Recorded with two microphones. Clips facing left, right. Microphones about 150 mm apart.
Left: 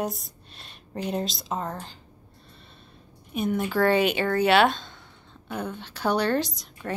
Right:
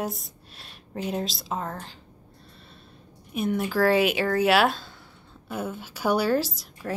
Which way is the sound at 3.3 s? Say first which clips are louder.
Even; centre (ahead or behind).